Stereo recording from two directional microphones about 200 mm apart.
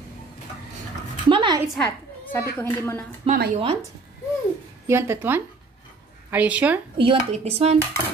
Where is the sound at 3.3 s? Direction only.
30° right (ahead or behind).